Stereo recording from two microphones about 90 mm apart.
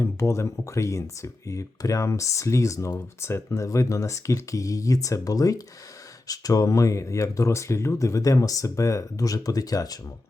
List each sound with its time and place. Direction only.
0.0 s speech: 35° left (ahead or behind)